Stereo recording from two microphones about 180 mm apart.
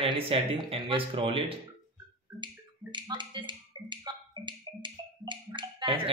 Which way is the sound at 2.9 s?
25° right (ahead or behind).